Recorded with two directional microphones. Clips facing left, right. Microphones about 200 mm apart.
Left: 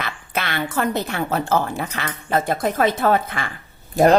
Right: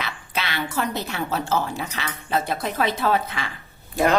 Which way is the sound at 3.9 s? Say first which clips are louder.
Left 6 dB; 40° left (ahead or behind).